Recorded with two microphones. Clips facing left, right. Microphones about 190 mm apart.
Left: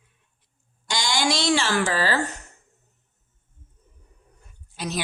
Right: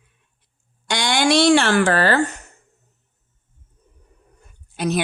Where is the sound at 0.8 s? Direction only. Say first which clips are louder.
Right 6 dB; 60° right (ahead or behind).